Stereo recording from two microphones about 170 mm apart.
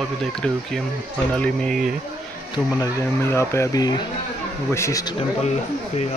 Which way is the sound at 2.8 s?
15° left (ahead or behind).